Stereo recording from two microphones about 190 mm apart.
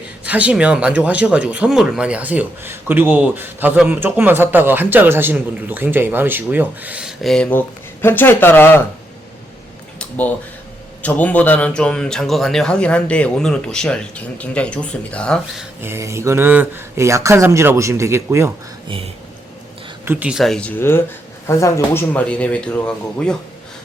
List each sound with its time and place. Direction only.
0.3 s speech: 5° right (ahead or behind); by 8.8 s 10° left (ahead or behind)
10.0 s a sound: 10° left (ahead or behind)
11.0 s speech: 10° left (ahead or behind)
15.8 s speech: 15° right (ahead or behind)
18.9 s speech: 30° right (ahead or behind)
20.1 s speech: 10° right (ahead or behind)